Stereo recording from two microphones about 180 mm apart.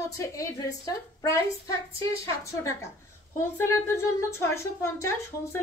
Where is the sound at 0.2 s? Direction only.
15° left (ahead or behind).